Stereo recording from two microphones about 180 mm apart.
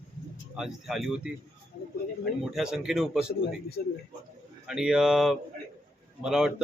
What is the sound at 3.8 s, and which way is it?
Speech, 55° left (ahead or behind).